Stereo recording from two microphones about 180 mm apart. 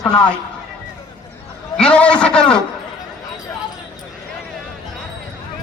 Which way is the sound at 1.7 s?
5° left (ahead or behind).